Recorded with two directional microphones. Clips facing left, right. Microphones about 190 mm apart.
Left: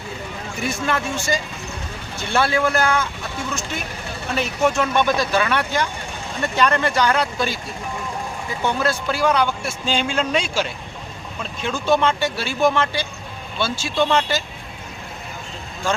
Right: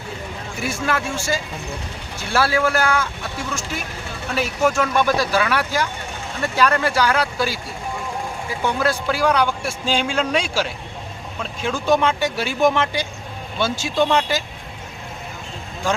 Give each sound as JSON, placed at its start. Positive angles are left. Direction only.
{"t": 0.6, "sound": "a man's voice", "side_deg": -5}
{"t": 4.4, "sound": "a man's voice", "side_deg": -5}
{"t": 8.6, "sound": "a man's voice", "side_deg": -10}